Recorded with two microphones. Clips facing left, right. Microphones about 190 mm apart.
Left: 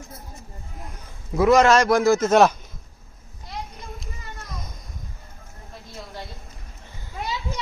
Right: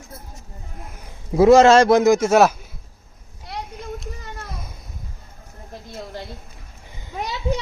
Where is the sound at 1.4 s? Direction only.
25° right (ahead or behind); by 2.6 s 5° right (ahead or behind).